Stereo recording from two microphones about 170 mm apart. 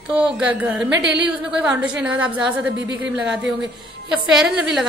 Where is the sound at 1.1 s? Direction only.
5° right (ahead or behind).